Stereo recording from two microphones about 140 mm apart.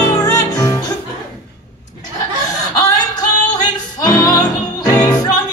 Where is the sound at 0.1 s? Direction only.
25° left (ahead or behind).